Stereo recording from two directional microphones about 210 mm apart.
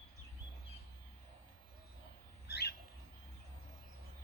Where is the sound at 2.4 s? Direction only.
50° left (ahead or behind).